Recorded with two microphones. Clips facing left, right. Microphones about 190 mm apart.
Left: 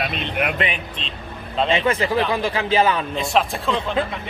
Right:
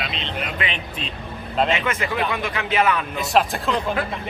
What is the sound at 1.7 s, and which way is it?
A man's voice, 30° left (ahead or behind).